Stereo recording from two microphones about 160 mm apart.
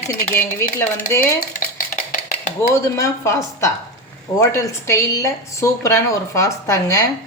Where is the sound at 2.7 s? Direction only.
20° left (ahead or behind).